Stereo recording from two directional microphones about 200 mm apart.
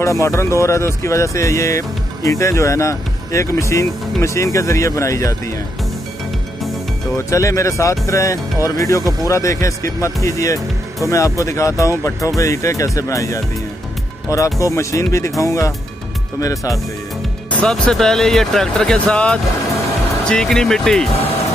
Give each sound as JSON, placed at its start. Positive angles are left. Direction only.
{"t": 0.0, "sound": "speech", "side_deg": 15}
{"t": 7.2, "sound": "speech", "side_deg": 15}
{"t": 17.5, "sound": "speech", "side_deg": 5}